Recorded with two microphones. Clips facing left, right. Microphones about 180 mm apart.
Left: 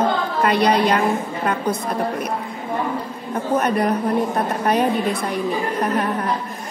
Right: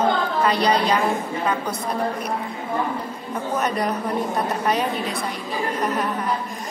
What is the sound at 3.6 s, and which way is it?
Speech, 55° left (ahead or behind).